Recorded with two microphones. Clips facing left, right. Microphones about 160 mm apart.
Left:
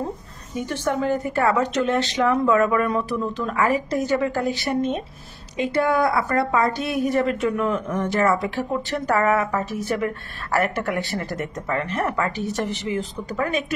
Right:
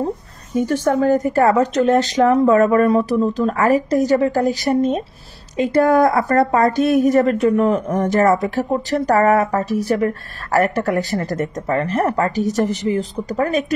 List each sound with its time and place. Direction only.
0.6 s speech: 40° right (ahead or behind)